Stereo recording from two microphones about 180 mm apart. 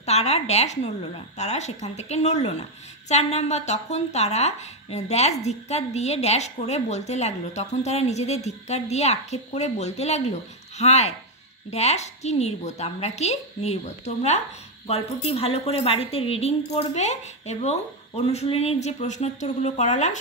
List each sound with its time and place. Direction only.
0.0 s a woman's voice: 35° left (ahead or behind)